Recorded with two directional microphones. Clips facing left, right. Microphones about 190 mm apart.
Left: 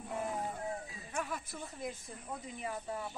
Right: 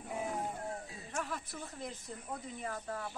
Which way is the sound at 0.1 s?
5° right (ahead or behind).